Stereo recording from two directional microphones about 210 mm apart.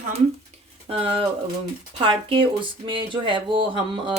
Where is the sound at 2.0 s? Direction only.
25° right (ahead or behind).